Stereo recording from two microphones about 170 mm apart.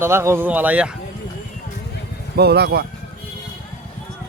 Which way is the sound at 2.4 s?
70° right (ahead or behind).